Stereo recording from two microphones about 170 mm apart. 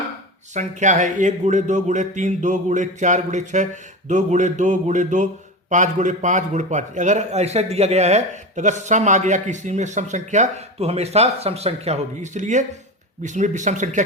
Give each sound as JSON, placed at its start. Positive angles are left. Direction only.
{"t": 0.5, "sound": "speech", "side_deg": -45}